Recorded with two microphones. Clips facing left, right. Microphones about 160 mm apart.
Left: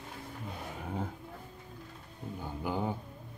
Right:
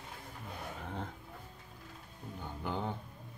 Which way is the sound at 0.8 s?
10° left (ahead or behind).